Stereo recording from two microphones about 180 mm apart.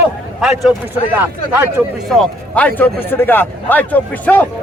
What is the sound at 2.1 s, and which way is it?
Speech, 5° left (ahead or behind).